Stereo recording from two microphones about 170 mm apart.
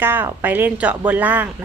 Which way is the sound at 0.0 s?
10° right (ahead or behind).